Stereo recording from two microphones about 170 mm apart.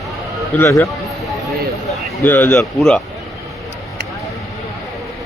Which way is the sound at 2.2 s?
10° left (ahead or behind).